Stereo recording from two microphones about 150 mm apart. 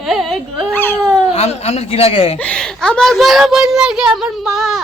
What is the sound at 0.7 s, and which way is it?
Babbling, 15° left (ahead or behind).